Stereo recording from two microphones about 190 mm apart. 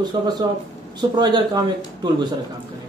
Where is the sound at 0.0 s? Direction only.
20° right (ahead or behind).